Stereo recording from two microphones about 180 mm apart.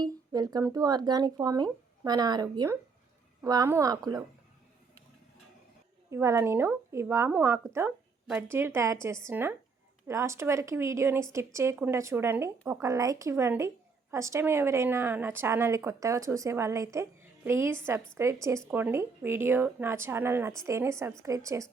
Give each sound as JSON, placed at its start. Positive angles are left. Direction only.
{"t": 0.0, "sound": "speech", "side_deg": -20}
{"t": 6.1, "sound": "a woman's voice", "side_deg": -15}